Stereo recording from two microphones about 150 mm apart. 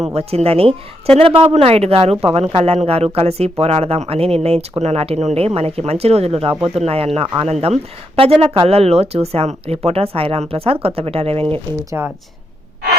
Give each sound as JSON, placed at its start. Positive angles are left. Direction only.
{"t": 0.0, "sound": "speech", "side_deg": -45}
{"t": 11.9, "sound": "speech", "side_deg": -15}